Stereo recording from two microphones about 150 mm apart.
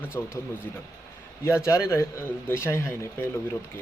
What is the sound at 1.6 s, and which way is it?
Speech, 20° left (ahead or behind).